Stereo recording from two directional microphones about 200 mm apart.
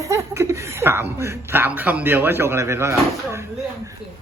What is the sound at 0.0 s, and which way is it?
Speech, 15° right (ahead or behind).